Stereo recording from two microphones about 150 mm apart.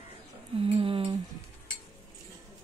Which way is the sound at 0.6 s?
35° right (ahead or behind).